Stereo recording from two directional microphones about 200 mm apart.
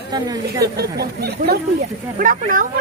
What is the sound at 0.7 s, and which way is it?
Speech, 55° right (ahead or behind).